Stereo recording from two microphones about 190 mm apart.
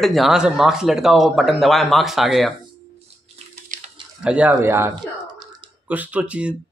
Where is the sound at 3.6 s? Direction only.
45° right (ahead or behind).